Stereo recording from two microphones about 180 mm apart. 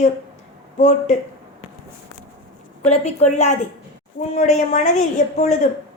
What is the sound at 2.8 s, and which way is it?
A woman's voice, 40° left (ahead or behind).